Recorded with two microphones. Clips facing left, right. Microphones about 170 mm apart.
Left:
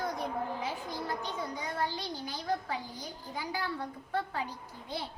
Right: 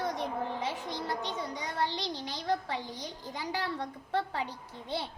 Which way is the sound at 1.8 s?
85° right.